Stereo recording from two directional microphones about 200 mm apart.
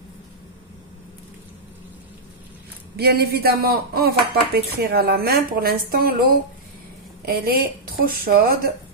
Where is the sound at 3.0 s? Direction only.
50° right (ahead or behind).